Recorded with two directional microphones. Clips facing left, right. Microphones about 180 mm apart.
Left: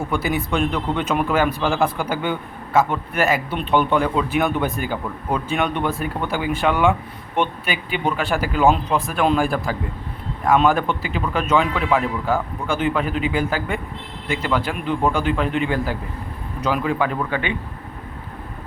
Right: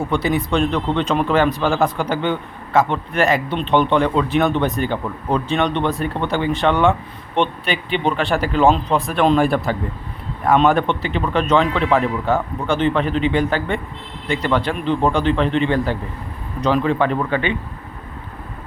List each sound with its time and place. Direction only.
0.3 s a man's voice: 5° left (ahead or behind)